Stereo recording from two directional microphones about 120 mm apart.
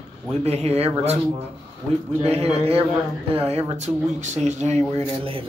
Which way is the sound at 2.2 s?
60° right (ahead or behind).